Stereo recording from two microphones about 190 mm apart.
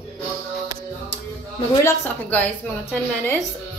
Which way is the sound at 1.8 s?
10° left (ahead or behind).